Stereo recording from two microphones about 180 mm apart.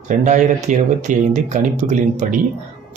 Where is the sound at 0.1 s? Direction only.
45° right (ahead or behind).